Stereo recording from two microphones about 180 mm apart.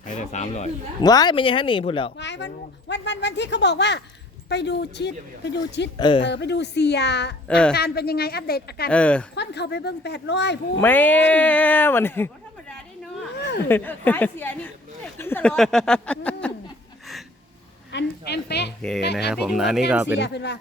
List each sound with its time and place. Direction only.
0.0 s a sound: 40° left (ahead or behind)
1.0 s speech: 20° left (ahead or behind)
2.1 s speech: 75° left (ahead or behind)
6.0 s speech: 25° left (ahead or behind)
6.2 s speech: 75° left (ahead or behind)
7.4 s a woman's voice: 5° left (ahead or behind)
7.7 s speech: 60° left (ahead or behind)
8.9 s speech: 5° left (ahead or behind)
9.3 s speech: 70° left (ahead or behind)
10.8 s speech: 10° left (ahead or behind)
13.7 s a woman's voice: 10° left (ahead or behind)
17.9 s speech: 65° left (ahead or behind)
19.3 s speech: 5° right (ahead or behind)
20.1 s speech: 70° left (ahead or behind)